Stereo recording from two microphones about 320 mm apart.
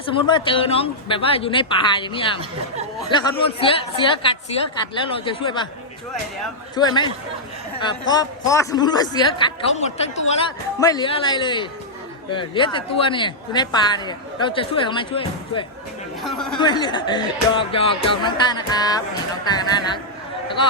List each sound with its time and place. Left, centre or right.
0.3 s speech: centre
6.7 s speech: centre
16.2 s speech: centre
16.6 s speech: centre